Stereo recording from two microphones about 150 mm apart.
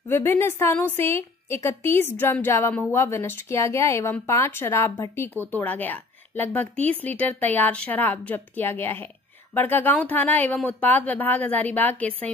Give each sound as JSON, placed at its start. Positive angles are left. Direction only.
{"t": 0.1, "sound": "a woman's voice", "side_deg": 15}